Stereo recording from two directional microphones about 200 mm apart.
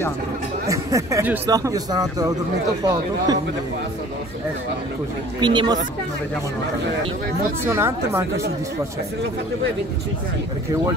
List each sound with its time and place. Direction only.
0.7 s speech: 15° right (ahead or behind)
5.4 s speech: 25° right (ahead or behind)
7.6 s speech: 10° right (ahead or behind)